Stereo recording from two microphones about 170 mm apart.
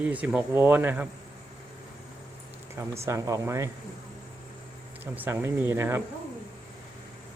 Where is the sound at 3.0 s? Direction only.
20° right (ahead or behind).